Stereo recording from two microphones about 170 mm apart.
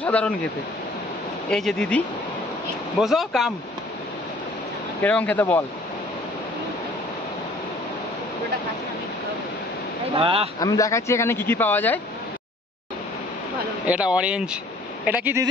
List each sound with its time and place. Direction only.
0.0 s speech: 10° left (ahead or behind)
1.5 s speech: 5° left (ahead or behind)
5.0 s speech: 10° left (ahead or behind)
10.1 s speech: 35° right (ahead or behind)
10.6 s speech: 20° left (ahead or behind)
13.8 s speech: 5° right (ahead or behind)